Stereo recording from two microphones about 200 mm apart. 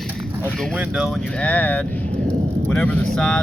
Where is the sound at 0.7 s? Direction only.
5° right (ahead or behind).